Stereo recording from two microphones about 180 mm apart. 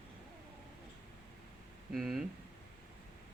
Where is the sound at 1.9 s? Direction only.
Centre (ahead or behind).